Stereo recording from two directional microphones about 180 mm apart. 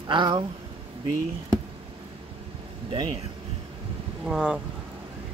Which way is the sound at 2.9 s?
30° right (ahead or behind).